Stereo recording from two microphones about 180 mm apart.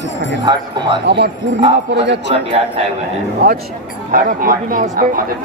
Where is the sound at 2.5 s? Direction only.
30° right (ahead or behind).